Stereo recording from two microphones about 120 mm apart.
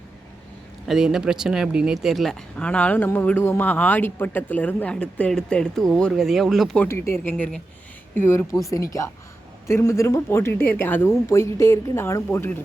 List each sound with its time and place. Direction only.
0.9 s speech: centre (ahead or behind)
6.8 s speech: 25° left (ahead or behind)
7.3 s speech: 10° left (ahead or behind)